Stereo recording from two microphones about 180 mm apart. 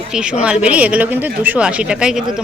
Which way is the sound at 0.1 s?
5° right (ahead or behind).